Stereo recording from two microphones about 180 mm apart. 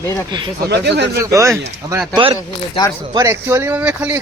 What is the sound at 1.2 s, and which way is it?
Speech, 15° right (ahead or behind).